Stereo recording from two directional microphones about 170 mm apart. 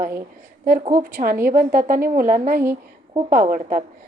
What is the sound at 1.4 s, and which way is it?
A woman's voice, 55° right (ahead or behind).